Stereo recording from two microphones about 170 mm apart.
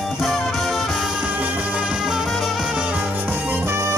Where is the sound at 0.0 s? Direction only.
Centre (ahead or behind).